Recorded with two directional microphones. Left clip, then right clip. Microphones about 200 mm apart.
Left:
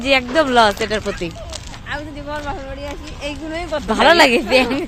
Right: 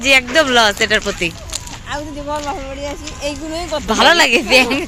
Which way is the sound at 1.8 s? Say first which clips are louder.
Right 3 dB; 60° right (ahead or behind).